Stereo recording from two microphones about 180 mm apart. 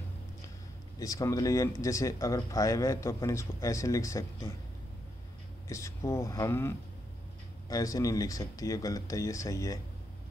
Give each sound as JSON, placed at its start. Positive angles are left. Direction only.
{"t": 0.9, "sound": "a man's voice", "side_deg": 20}
{"t": 5.7, "sound": "a man's voice", "side_deg": 15}
{"t": 7.7, "sound": "speech", "side_deg": 20}